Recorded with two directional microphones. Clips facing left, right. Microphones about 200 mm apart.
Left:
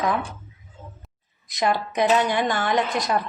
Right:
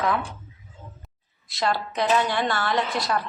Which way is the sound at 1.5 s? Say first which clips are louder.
Left 2 dB; 15° left (ahead or behind).